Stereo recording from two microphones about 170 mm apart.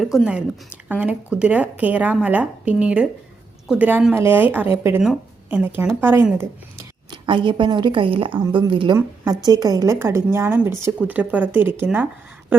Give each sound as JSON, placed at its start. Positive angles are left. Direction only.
{"t": 0.0, "sound": "speech", "side_deg": 0}
{"t": 7.1, "sound": "a woman's voice", "side_deg": -30}